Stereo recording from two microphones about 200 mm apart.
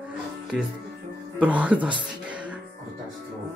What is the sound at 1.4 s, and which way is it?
Speech, 5° right (ahead or behind).